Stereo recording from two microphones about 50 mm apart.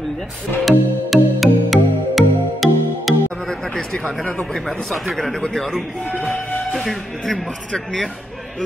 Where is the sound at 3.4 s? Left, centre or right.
Centre.